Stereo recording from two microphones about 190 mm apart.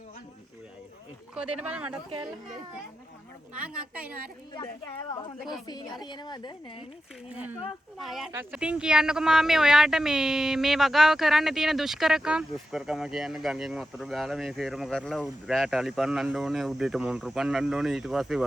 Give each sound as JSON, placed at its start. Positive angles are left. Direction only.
{"t": 1.4, "sound": "speech", "side_deg": -5}
{"t": 3.5, "sound": "a woman's voice", "side_deg": -5}
{"t": 5.4, "sound": "speech", "side_deg": 0}
{"t": 5.6, "sound": "a woman's voice", "side_deg": 20}
{"t": 7.3, "sound": "a woman's voice", "side_deg": -5}